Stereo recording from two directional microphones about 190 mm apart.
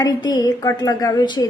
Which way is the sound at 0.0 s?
20° left (ahead or behind).